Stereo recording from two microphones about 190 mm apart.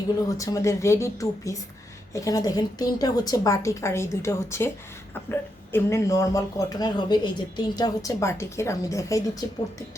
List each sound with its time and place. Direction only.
0.3 s speech: 15° left (ahead or behind)